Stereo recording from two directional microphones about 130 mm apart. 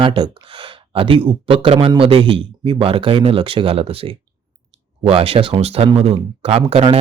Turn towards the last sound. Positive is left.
turn(degrees=-50)  # may be behind; listen again after turning